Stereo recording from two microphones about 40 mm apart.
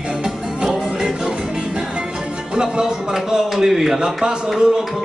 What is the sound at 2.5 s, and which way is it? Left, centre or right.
Music, centre.